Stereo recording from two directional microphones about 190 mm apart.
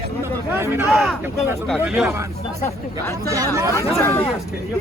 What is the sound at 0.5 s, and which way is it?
Speech, 15° right (ahead or behind).